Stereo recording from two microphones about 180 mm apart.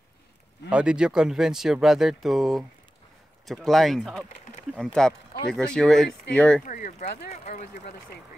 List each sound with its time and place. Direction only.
0.7 s speech: 5° right (ahead or behind)
6.6 s speech: 45° left (ahead or behind)